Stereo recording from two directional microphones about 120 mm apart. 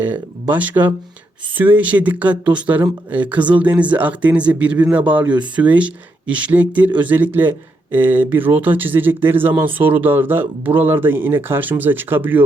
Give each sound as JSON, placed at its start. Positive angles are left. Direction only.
{"t": 0.0, "sound": "speech", "side_deg": -15}